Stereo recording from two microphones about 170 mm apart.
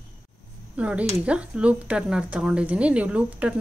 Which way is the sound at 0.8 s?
5° right (ahead or behind).